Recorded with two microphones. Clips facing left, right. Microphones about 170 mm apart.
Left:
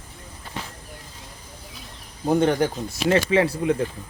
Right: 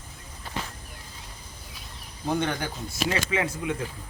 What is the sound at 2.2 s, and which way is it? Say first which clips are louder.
Speech: left 8 dB; 40° left (ahead or behind).